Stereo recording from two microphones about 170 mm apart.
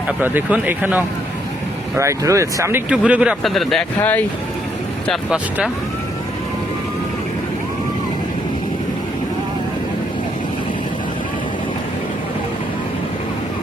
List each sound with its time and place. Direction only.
0.2 s speech: 10° right (ahead or behind)
2.9 s speech: 5° right (ahead or behind)
5.3 s speech: 5° right (ahead or behind)